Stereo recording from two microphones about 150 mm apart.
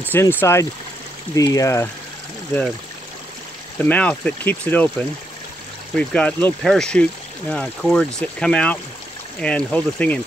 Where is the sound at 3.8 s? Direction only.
10° left (ahead or behind).